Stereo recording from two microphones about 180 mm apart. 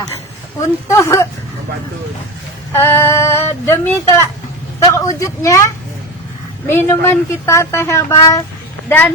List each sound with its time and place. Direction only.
0.9 s speech: 15° left (ahead or behind)
2.7 s speech: 10° left (ahead or behind)